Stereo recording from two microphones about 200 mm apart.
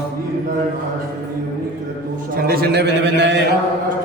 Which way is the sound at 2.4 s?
50° right (ahead or behind).